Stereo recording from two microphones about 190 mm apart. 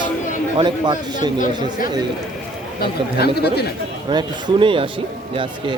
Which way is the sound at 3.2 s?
60° left (ahead or behind).